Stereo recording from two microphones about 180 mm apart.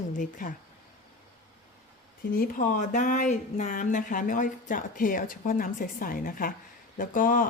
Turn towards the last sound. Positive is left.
turn(degrees=50)  # may be behind; listen again after turning